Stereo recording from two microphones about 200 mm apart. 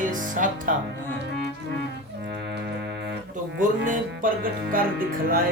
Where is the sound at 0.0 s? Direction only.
40° right (ahead or behind).